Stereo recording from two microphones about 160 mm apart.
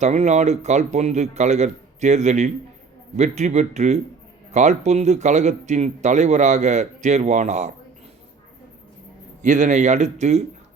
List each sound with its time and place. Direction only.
0.0 s speech: 45° right (ahead or behind)
9.4 s speech: 50° right (ahead or behind)